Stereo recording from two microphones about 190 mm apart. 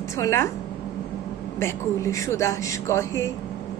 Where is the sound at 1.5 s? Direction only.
15° left (ahead or behind).